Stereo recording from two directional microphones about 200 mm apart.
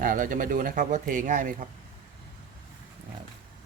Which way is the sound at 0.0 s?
45° right (ahead or behind).